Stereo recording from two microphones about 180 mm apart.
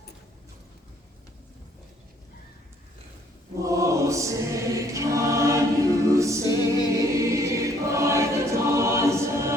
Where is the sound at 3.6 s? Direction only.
15° right (ahead or behind).